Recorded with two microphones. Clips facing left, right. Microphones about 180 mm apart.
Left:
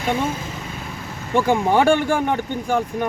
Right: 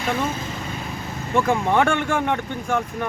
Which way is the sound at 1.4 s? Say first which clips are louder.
Left 2 dB; 30° left (ahead or behind).